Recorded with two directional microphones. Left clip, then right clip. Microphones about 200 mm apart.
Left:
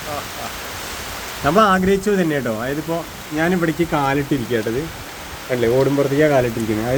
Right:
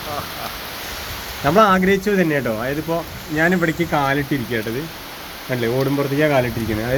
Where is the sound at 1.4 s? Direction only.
5° right (ahead or behind).